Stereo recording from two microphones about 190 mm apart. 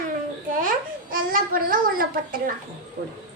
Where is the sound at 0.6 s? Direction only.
45° right (ahead or behind).